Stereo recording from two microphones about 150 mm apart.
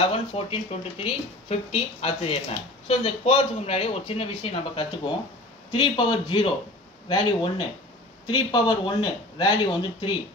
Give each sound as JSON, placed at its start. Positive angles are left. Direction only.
{"t": 0.1, "sound": "a man's voice", "side_deg": 40}